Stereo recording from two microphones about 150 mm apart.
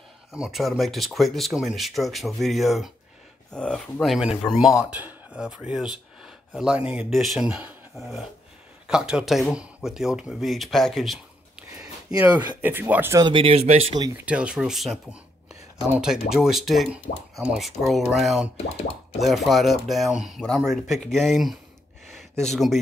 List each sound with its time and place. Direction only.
0.3 s speech: centre (ahead or behind)
11.7 s a sound: 25° right (ahead or behind)
12.2 s speech: 15° right (ahead or behind)
13.2 s speech: 35° right (ahead or behind)
14.1 s speech: 10° right (ahead or behind)